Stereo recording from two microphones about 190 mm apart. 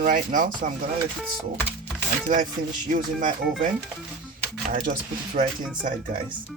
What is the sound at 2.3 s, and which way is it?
Speech, 40° right (ahead or behind).